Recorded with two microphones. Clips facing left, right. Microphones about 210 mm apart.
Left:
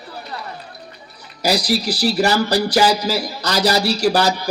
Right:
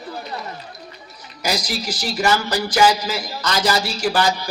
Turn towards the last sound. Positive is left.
turn(degrees=40)  # may be behind; listen again after turning